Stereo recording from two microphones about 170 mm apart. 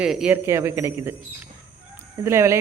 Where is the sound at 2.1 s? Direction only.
15° right (ahead or behind).